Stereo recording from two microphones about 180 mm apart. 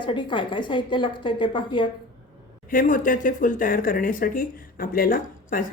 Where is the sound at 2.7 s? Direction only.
50° left (ahead or behind).